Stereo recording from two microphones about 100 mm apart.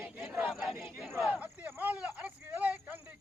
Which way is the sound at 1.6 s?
15° right (ahead or behind).